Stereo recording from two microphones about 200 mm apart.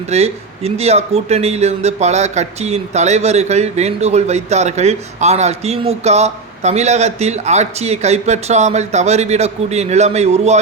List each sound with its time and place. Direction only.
0.1 s speech: 30° right (ahead or behind)